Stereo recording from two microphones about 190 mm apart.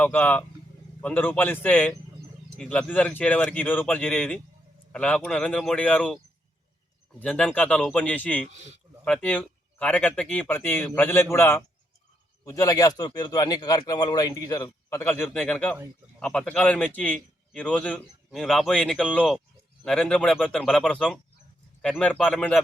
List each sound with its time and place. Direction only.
0.0 s a man's voice: 10° left (ahead or behind)
7.2 s a man's voice: 5° left (ahead or behind)